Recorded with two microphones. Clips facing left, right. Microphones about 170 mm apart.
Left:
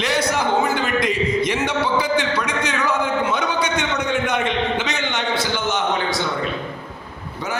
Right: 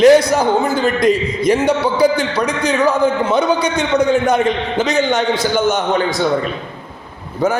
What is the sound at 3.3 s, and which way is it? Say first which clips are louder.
A man's voice: right 7 dB; 35° right (ahead or behind).